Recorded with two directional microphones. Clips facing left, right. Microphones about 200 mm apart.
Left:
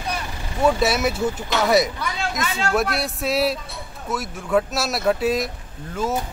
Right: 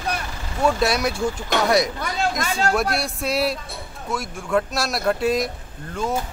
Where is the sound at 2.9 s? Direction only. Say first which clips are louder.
Left 1 dB; centre (ahead or behind).